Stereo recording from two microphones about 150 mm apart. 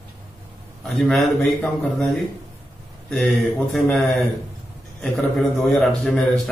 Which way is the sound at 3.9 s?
Centre (ahead or behind).